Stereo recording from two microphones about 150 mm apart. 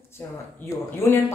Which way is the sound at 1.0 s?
15° left (ahead or behind).